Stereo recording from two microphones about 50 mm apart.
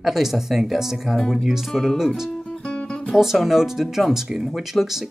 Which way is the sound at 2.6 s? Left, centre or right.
Left.